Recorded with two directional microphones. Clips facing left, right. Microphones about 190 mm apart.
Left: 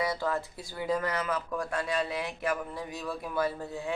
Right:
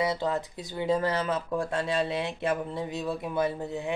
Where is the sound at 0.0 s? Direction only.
20° right (ahead or behind).